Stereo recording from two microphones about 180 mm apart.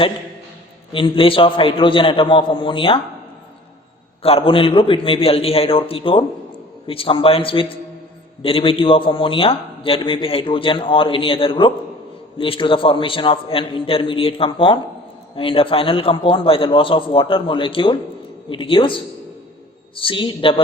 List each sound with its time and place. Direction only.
0.9 s a man's voice: 30° left (ahead or behind)
4.2 s a man's voice: 30° left (ahead or behind)